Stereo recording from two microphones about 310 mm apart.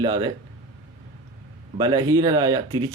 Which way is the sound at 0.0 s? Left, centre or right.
Centre.